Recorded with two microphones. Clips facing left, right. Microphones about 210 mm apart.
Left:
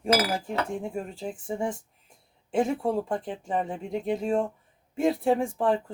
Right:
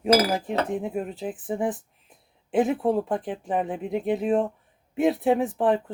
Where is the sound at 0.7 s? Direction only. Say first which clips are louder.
Right 4 dB; 5° right (ahead or behind).